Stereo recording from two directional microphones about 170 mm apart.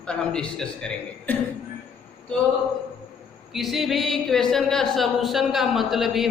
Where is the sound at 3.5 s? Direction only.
Centre (ahead or behind).